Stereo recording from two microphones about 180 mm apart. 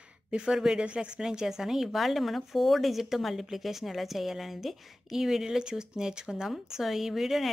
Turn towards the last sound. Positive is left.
turn(degrees=0)  # may be behind; listen again after turning